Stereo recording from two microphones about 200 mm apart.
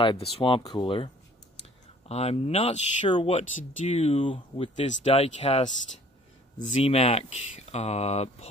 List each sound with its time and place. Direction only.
0.0 s speech: 25° left (ahead or behind)
6.8 s speech: 30° left (ahead or behind)